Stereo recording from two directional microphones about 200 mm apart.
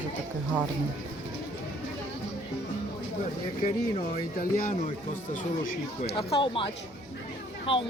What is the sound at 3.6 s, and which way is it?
Speech, 40° left (ahead or behind).